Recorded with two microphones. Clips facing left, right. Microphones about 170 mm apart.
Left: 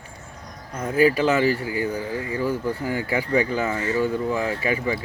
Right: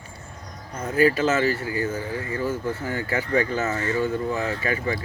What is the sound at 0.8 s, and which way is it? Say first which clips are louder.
Speech: left 1 dB; 15° left (ahead or behind).